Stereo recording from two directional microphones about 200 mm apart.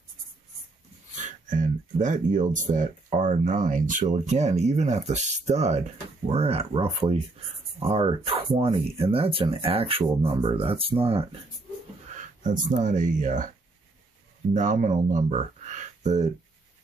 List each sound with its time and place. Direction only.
1.1 s speech: 40° right (ahead or behind)
12.4 s speech: 40° right (ahead or behind)
14.5 s speech: 40° right (ahead or behind)